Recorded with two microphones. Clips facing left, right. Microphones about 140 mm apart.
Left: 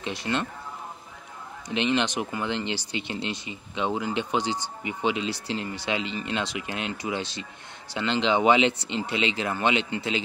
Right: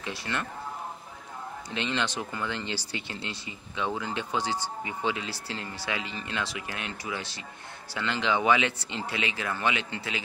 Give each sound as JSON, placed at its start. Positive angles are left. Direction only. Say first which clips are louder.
{"t": 0.0, "sound": "speech", "louder": "left 5 dB", "side_deg": 20}
{"t": 1.7, "sound": "speech", "louder": "left 6 dB", "side_deg": 20}